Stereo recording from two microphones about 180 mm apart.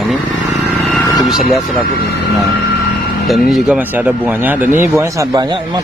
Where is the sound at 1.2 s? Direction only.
Centre (ahead or behind).